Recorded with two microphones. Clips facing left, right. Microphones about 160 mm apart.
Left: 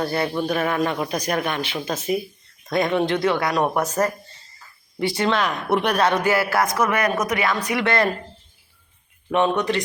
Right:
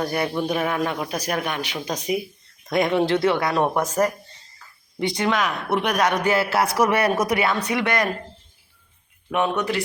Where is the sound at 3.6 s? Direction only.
10° left (ahead or behind).